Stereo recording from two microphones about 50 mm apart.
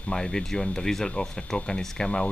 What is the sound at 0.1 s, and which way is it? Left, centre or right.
Speech, centre.